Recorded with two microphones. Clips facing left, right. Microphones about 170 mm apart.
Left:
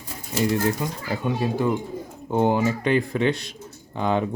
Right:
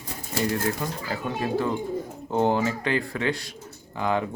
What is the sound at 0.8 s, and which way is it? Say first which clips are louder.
Speech: left 3 dB; 15° left (ahead or behind).